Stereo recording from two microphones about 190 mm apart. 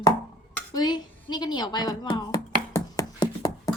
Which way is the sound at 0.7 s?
25° left (ahead or behind).